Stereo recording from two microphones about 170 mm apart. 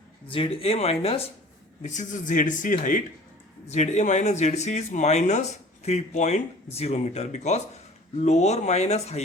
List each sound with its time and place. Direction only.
0.3 s speech: 35° left (ahead or behind)
1.8 s speech: 45° left (ahead or behind)